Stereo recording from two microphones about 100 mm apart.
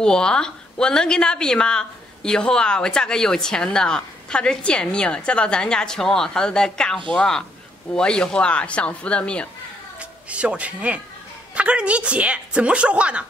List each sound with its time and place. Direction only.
0.0 s a woman's voice: 10° left (ahead or behind)
9.9 s a woman's voice: 10° right (ahead or behind)